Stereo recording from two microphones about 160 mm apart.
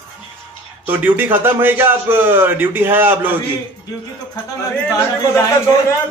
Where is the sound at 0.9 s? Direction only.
10° right (ahead or behind).